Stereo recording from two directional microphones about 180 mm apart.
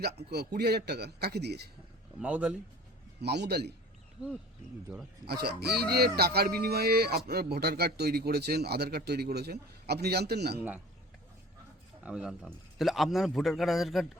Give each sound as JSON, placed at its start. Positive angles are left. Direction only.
{"t": 0.2, "sound": "a man's voice", "side_deg": -65}
{"t": 2.1, "sound": "speech", "side_deg": -5}
{"t": 3.2, "sound": "a man's voice", "side_deg": -65}
{"t": 5.2, "sound": "a man's voice", "side_deg": -65}
{"t": 12.0, "sound": "a man's voice", "side_deg": -5}